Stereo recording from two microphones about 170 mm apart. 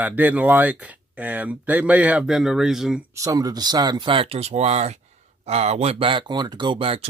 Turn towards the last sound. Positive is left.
turn(degrees=-35)  # may be behind; listen again after turning